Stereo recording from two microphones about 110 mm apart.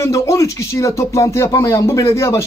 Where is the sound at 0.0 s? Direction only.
25° left (ahead or behind).